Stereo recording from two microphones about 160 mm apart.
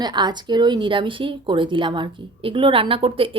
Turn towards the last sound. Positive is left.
turn(degrees=-35)  # may be behind; listen again after turning